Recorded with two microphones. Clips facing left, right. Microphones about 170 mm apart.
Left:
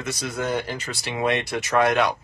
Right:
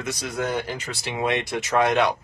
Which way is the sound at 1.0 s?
15° right (ahead or behind).